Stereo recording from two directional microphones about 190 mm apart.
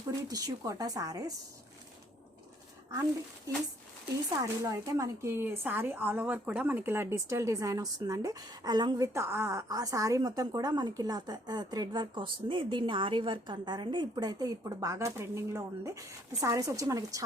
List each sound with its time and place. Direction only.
0.2 s speech: 20° right (ahead or behind)
4.1 s speech: 15° right (ahead or behind)